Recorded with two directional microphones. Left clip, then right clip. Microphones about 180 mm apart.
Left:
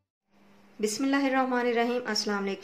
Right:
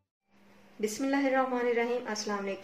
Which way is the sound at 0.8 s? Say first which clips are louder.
Left 2 dB; 30° left (ahead or behind).